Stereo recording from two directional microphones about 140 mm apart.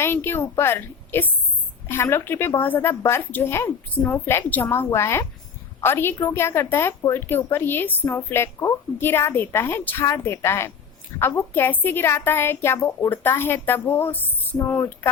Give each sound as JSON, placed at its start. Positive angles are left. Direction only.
{"t": 0.0, "sound": "a woman's voice", "side_deg": 15}